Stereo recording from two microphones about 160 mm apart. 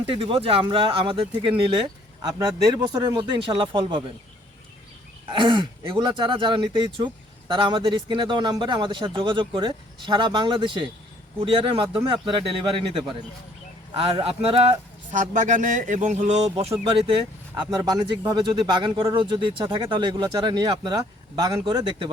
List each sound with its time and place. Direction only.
0.0 s speech: 35° right (ahead or behind)
5.3 s speech: 30° right (ahead or behind)
15.1 s speech: 55° right (ahead or behind); by 17.2 s 35° right (ahead or behind)
17.5 s speech: 25° right (ahead or behind)